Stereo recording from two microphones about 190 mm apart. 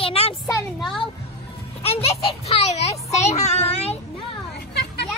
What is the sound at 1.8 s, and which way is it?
A child's voice, 30° left (ahead or behind).